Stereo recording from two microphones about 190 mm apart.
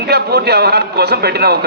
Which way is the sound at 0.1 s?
60° right (ahead or behind).